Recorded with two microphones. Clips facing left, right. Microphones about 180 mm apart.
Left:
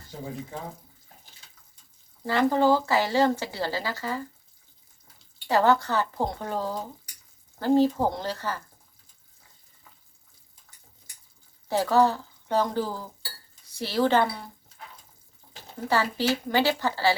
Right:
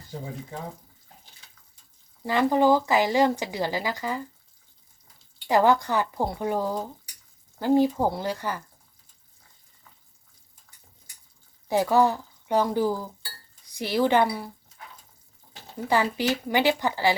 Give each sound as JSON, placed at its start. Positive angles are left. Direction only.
{"t": 2.2, "sound": "speech", "side_deg": -15}
{"t": 5.5, "sound": "speech", "side_deg": -15}
{"t": 11.7, "sound": "a woman's voice", "side_deg": -15}
{"t": 15.9, "sound": "speech", "side_deg": -15}